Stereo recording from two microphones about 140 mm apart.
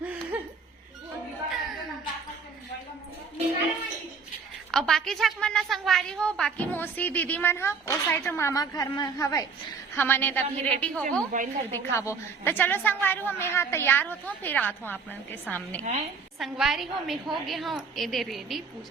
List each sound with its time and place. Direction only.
0.0 s laughter: 10° right (ahead or behind)
1.5 s a sound: centre (ahead or behind)
4.7 s a woman's voice: centre (ahead or behind); by 9.5 s 25° left (ahead or behind)
9.9 s a woman's voice: 15° left (ahead or behind)
11.3 s a woman's voice: 65° right (ahead or behind)
11.7 s a woman's voice: 15° left (ahead or behind)
15.8 s a woman's voice: 50° right (ahead or behind)
16.4 s a woman's voice: centre (ahead or behind)